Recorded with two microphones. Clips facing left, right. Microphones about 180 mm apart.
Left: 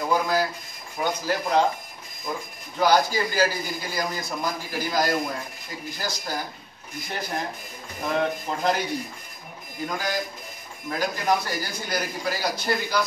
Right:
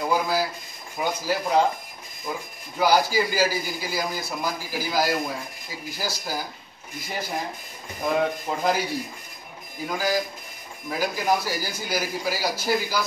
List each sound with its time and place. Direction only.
0.0 s a sound: 5° right (ahead or behind)
0.9 s speech: 5° right (ahead or behind)
2.8 s a man's voice: 5° right (ahead or behind)
8.0 s a man's voice: 5° right (ahead or behind)
9.8 s a man's voice: 5° right (ahead or behind)